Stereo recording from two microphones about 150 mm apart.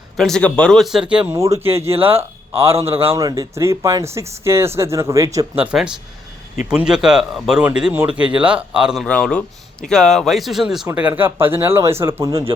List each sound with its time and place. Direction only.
0.2 s speech: 5° left (ahead or behind)
1.4 s speech: 15° right (ahead or behind)
5.6 s speech: 5° right (ahead or behind)
9.0 s speech: 5° left (ahead or behind)
10.8 s speech: 15° right (ahead or behind)